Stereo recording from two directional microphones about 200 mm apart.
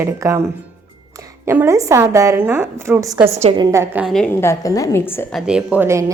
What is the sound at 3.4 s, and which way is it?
Speech, 30° right (ahead or behind).